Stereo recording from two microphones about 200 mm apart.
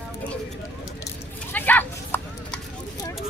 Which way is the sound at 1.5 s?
10° left (ahead or behind).